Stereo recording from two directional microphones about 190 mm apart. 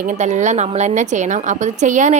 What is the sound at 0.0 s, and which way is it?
A woman's voice, 40° right (ahead or behind).